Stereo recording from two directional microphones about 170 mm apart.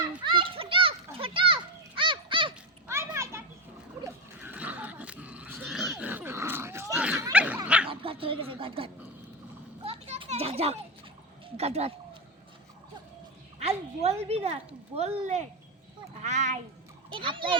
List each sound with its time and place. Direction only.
0.3 s children playing: 30° right (ahead or behind)
2.8 s children playing: 15° right (ahead or behind)
4.0 s dog: 10° right (ahead or behind)
6.9 s snicker: 5° right (ahead or behind)
7.3 s dog: 10° right (ahead or behind)
7.9 s a sound: 35° right (ahead or behind)
9.8 s children playing: 35° right (ahead or behind)
11.4 s speech: 40° right (ahead or behind)
13.6 s speech: 40° right (ahead or behind)
17.2 s a child's voice: 30° right (ahead or behind)